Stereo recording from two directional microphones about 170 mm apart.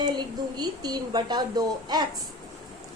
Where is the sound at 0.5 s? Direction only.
25° right (ahead or behind).